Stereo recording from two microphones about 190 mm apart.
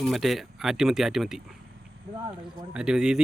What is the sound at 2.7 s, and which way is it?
Speech, 5° right (ahead or behind).